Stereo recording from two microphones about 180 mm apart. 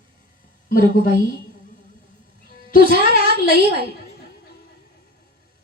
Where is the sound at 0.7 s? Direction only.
50° left (ahead or behind).